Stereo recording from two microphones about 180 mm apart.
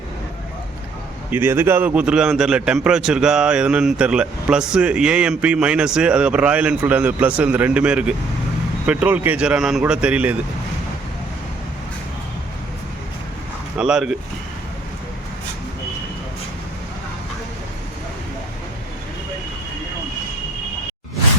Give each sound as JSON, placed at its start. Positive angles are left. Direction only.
{"t": 1.3, "sound": "a man's voice", "side_deg": -10}
{"t": 13.7, "sound": "a man's voice", "side_deg": -5}